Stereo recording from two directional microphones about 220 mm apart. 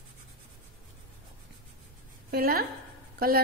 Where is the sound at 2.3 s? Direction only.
45° right (ahead or behind).